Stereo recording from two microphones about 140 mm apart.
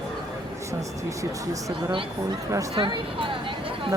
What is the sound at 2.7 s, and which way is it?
Speech, 40° right (ahead or behind).